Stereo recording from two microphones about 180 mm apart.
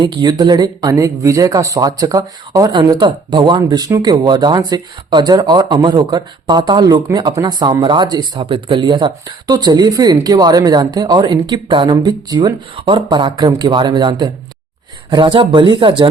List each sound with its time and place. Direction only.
0.0 s speech: 25° right (ahead or behind)